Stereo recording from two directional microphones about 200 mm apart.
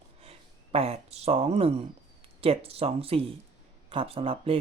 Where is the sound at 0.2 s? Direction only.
30° right (ahead or behind).